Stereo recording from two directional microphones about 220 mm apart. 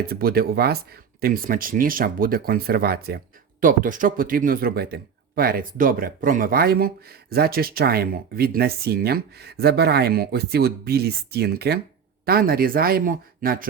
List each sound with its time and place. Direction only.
0.1 s speech: 45° right (ahead or behind)